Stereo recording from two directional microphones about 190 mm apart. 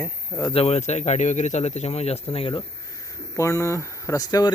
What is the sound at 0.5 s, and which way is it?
Speech, 35° left (ahead or behind).